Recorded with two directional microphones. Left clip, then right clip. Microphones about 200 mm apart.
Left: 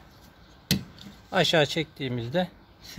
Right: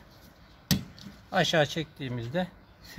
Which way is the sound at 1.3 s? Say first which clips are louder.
Left 3 dB; 25° left (ahead or behind).